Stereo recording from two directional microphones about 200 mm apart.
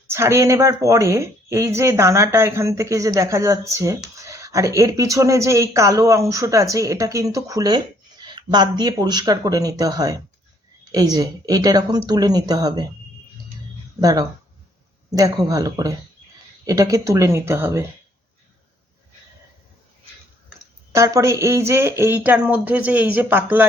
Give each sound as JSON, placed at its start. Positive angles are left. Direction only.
{"t": 0.1, "sound": "speech", "side_deg": -15}
{"t": 14.0, "sound": "speech", "side_deg": -15}
{"t": 20.9, "sound": "speech", "side_deg": -15}